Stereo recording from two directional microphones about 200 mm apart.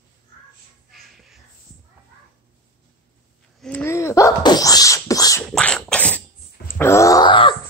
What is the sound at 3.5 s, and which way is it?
Sneeze, 5° left (ahead or behind).